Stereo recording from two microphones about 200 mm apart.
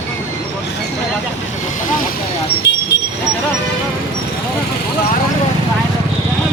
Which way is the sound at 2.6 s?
60° left (ahead or behind).